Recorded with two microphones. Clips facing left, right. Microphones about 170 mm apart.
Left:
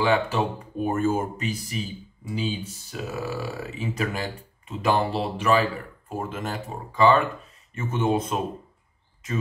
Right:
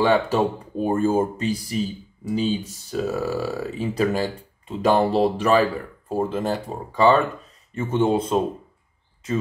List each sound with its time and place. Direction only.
0.0 s speech: 35° right (ahead or behind)